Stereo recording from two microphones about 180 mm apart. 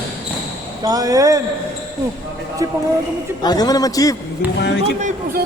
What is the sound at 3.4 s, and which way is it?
Speech, 20° left (ahead or behind).